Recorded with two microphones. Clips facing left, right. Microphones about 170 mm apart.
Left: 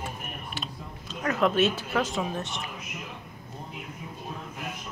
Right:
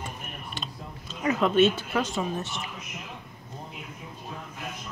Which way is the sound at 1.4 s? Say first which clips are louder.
Right 2 dB; centre (ahead or behind).